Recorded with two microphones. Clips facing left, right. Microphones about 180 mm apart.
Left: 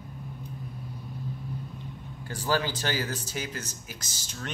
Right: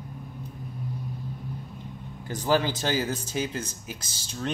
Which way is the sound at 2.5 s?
20° right (ahead or behind).